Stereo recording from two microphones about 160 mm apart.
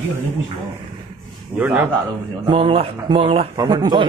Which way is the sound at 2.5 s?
35° right (ahead or behind).